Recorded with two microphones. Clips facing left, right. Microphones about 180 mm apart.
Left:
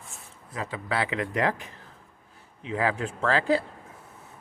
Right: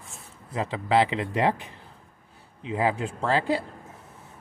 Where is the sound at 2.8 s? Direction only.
20° right (ahead or behind).